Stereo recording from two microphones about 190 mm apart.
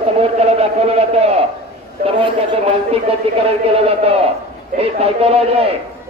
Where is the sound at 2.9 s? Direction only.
30° right (ahead or behind).